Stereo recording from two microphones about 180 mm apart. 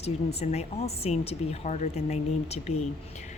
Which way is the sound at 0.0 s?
35° left (ahead or behind).